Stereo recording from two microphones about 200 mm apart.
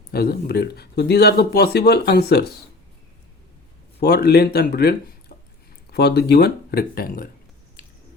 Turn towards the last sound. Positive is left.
turn(degrees=45)  # may be behind; listen again after turning